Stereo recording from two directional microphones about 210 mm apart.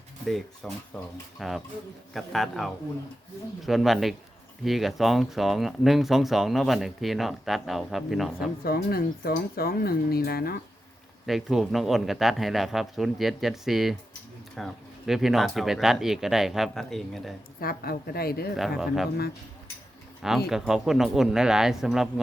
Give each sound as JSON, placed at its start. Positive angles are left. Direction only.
{"t": 0.3, "sound": "speech", "side_deg": 0}
{"t": 8.6, "sound": "speech", "side_deg": 45}
{"t": 11.3, "sound": "speech", "side_deg": 0}
{"t": 17.6, "sound": "speech", "side_deg": 45}
{"t": 20.5, "sound": "speech", "side_deg": 0}